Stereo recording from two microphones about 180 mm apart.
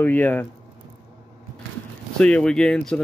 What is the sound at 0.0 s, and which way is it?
Speech, 10° left (ahead or behind).